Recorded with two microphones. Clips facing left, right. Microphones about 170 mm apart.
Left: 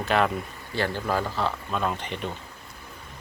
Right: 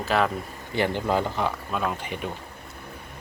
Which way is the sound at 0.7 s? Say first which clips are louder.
Right 3 dB; 20° right (ahead or behind).